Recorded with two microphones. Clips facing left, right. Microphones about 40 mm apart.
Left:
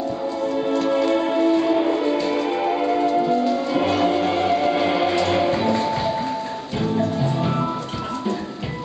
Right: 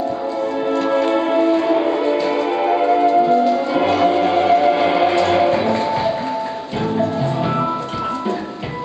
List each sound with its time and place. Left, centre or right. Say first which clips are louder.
0.7 s music: right 3 dB; centre